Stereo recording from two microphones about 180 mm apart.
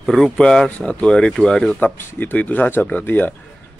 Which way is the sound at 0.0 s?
5° left (ahead or behind).